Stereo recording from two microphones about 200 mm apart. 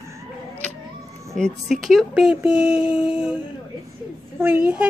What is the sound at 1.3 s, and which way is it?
Speech, centre (ahead or behind).